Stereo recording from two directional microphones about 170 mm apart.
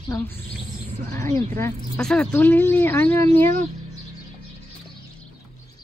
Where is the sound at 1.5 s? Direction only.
15° left (ahead or behind).